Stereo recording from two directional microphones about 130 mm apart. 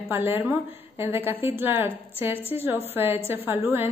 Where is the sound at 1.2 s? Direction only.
45° left (ahead or behind).